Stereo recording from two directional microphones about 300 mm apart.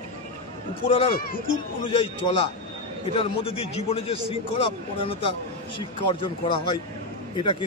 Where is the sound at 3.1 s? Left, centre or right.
Centre.